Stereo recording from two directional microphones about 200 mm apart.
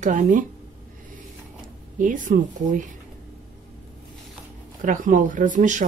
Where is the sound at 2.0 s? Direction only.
40° right (ahead or behind).